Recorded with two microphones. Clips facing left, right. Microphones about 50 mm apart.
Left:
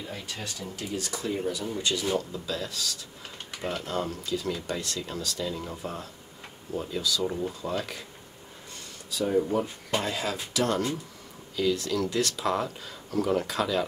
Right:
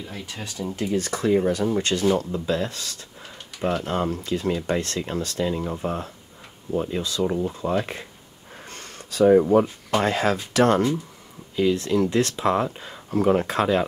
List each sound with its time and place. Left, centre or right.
0.3 s speech: right
2.1 s speech: right
7.2 s speech: right
8.6 s speech: right
11.5 s speech: right